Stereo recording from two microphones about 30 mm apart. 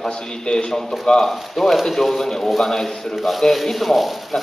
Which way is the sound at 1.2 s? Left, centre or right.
Centre.